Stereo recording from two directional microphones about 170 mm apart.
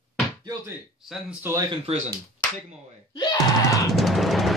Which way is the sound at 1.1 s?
10° right (ahead or behind).